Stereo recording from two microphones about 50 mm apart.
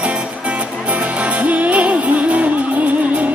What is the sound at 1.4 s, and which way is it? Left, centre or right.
Music, right.